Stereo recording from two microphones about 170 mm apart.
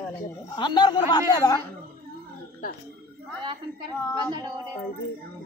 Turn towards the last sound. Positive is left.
turn(degrees=-25)  # may be behind; listen again after turning